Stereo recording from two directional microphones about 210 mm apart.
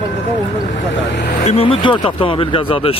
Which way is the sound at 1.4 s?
25° left (ahead or behind).